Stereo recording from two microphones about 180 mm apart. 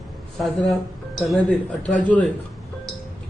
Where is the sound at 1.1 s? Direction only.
Centre (ahead or behind).